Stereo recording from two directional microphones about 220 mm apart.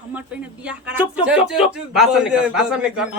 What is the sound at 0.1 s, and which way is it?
A man's voice, 5° right (ahead or behind).